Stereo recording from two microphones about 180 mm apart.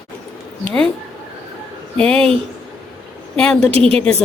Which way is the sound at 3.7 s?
30° right (ahead or behind).